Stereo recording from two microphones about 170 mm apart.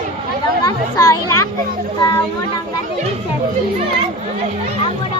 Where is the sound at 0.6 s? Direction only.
20° left (ahead or behind).